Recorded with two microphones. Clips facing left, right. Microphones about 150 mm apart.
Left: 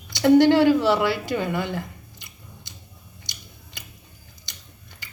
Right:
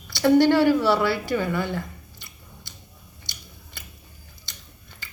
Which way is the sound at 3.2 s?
20° left (ahead or behind).